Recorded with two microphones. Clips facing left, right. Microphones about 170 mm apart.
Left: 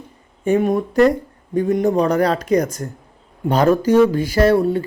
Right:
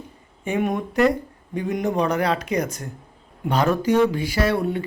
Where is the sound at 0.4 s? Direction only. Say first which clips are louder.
Left 7 dB; 35° left (ahead or behind).